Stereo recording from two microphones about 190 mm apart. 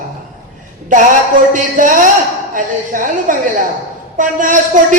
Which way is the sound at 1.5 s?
45° right (ahead or behind).